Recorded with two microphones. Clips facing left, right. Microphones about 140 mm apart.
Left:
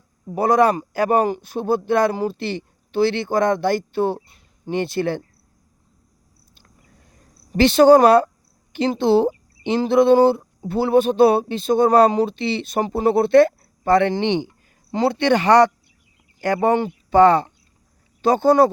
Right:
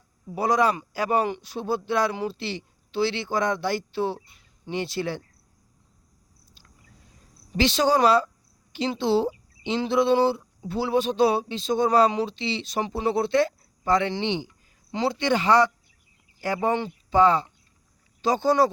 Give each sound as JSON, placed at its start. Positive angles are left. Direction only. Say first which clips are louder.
{"t": 0.3, "sound": "speech", "louder": "left 6 dB", "side_deg": 55}
{"t": 6.5, "sound": "a sound", "louder": "left 2 dB", "side_deg": 55}
{"t": 8.7, "sound": "speech", "louder": "left 6 dB", "side_deg": 55}